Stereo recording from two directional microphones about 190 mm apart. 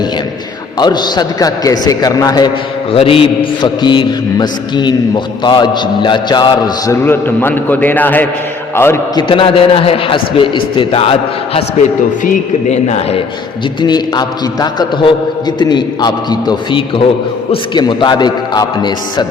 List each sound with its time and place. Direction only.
0.8 s mantra: 20° left (ahead or behind)
8.7 s a man's voice: 10° left (ahead or behind)
9.3 s mantra: 30° left (ahead or behind)
12.2 s a man's voice: 40° left (ahead or behind)
13.8 s mantra: 20° left (ahead or behind)